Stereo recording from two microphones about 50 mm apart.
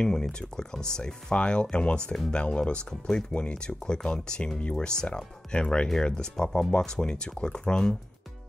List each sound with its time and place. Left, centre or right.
0.0 s speech: centre